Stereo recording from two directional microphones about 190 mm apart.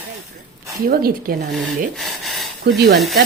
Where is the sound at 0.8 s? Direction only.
50° right (ahead or behind).